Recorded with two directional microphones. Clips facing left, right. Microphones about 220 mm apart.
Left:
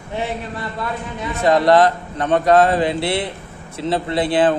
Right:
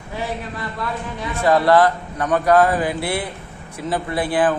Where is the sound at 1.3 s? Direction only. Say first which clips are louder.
Left 1 dB; 20° left (ahead or behind).